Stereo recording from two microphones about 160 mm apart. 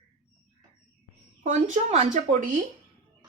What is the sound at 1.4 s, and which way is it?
Speech, 45° right (ahead or behind).